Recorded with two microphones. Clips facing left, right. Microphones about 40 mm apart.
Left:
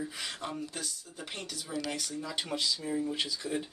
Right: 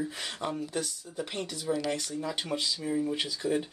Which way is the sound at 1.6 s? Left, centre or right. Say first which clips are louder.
Right 6 dB; centre.